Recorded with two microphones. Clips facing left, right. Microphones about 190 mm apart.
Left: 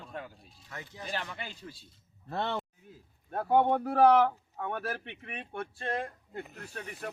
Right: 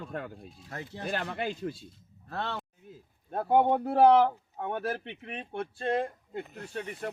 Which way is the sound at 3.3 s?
25° right (ahead or behind).